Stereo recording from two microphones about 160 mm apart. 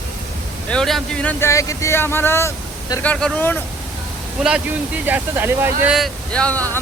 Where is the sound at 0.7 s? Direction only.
5° left (ahead or behind).